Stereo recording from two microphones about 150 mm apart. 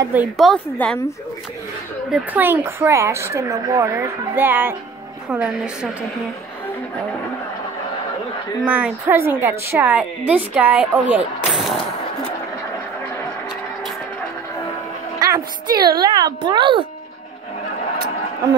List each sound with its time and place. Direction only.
0.4 s a woman's voice: 5° left (ahead or behind)
2.0 s a woman's voice: centre (ahead or behind)
2.4 s a woman's voice: 15° right (ahead or behind)
8.6 s a woman's voice: 10° right (ahead or behind)
15.1 s a woman's voice: 25° right (ahead or behind)